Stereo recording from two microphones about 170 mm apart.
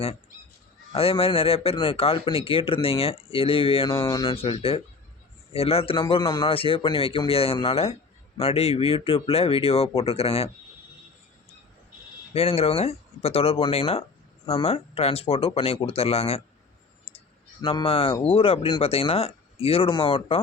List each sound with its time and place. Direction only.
0.9 s a man's voice: 35° left (ahead or behind)
3.9 s a man's voice: 20° left (ahead or behind); by 10.5 s 35° left (ahead or behind)
12.3 s a man's voice: 35° left (ahead or behind)